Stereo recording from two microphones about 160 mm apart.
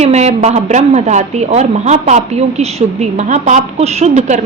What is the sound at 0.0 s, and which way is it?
A woman's voice, 45° right (ahead or behind).